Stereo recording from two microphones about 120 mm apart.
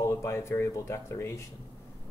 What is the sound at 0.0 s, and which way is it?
Speech, 25° left (ahead or behind).